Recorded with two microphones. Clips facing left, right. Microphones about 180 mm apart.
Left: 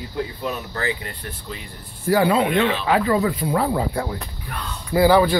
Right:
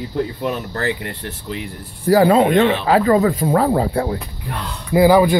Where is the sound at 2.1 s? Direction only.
45° right (ahead or behind).